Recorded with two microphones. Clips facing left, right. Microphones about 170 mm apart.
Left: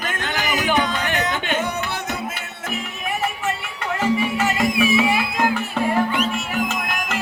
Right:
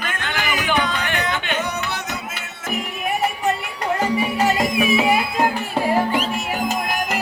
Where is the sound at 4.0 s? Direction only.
35° right (ahead or behind).